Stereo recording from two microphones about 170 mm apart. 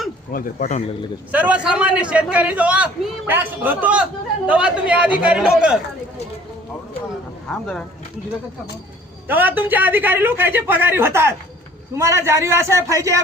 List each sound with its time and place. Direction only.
0.3 s speech: 50° left (ahead or behind)
1.3 s a man's voice: 10° right (ahead or behind)
7.4 s speech: 5° left (ahead or behind)
9.2 s a man's voice: 10° right (ahead or behind)